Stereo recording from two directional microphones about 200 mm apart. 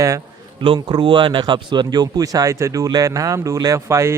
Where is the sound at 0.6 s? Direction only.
25° right (ahead or behind).